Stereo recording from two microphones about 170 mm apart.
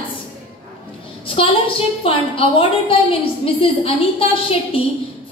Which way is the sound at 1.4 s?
35° left (ahead or behind).